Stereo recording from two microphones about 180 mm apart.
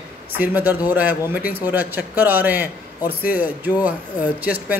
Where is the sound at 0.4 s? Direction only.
10° right (ahead or behind).